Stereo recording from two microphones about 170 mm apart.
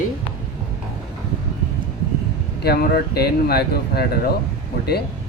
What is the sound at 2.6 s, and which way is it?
Speech, 65° left (ahead or behind).